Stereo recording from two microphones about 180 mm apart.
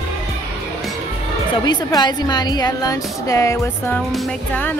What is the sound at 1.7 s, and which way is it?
A woman's voice, 25° left (ahead or behind).